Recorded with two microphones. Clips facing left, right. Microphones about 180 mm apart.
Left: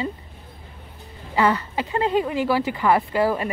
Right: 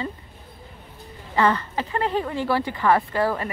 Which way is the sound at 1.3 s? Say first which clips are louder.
Left 1 dB; 10° left (ahead or behind).